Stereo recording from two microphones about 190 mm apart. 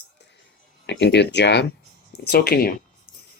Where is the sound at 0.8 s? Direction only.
65° left (ahead or behind).